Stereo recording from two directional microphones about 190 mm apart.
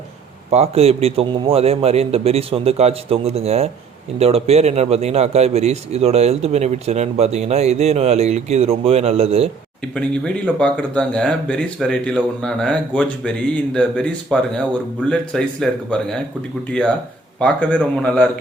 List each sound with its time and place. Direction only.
0.5 s a man's voice: 35° right (ahead or behind)
9.9 s speech: 5° left (ahead or behind)
17.4 s a man's voice: 5° left (ahead or behind)